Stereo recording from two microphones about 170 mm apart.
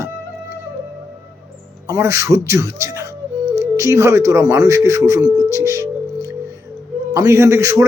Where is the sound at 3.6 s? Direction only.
15° right (ahead or behind).